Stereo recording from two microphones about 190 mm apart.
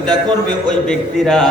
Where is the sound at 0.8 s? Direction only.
5° left (ahead or behind).